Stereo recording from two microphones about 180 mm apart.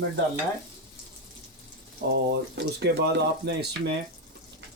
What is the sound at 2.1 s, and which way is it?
Speech, 65° right (ahead or behind).